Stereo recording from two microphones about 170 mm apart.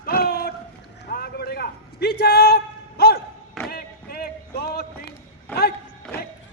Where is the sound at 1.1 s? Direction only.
65° left (ahead or behind).